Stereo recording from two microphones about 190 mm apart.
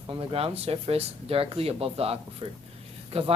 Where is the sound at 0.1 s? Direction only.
30° right (ahead or behind).